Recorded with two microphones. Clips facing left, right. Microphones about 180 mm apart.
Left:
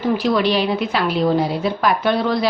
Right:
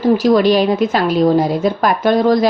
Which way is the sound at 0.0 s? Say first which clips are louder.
Right 6 dB; 40° right (ahead or behind).